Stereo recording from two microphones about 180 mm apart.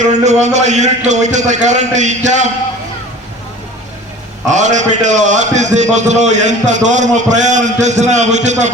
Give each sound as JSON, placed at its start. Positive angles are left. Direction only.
{"t": 0.0, "sound": "a man's voice", "side_deg": -40}
{"t": 4.4, "sound": "a man's voice", "side_deg": -40}